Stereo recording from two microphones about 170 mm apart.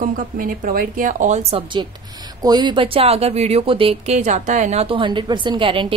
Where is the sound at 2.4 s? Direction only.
25° right (ahead or behind).